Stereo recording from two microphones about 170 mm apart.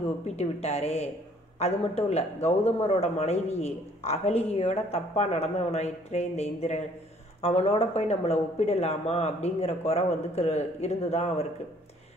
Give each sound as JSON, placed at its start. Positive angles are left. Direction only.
{"t": 0.4, "sound": "speech", "side_deg": 40}